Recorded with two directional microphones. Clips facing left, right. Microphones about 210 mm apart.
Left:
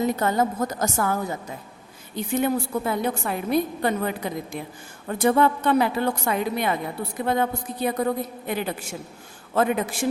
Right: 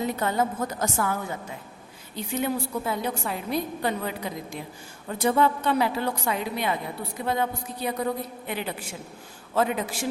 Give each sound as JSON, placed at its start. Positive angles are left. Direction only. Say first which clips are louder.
{"t": 0.2, "sound": "a woman's voice", "louder": "left 3 dB", "side_deg": 40}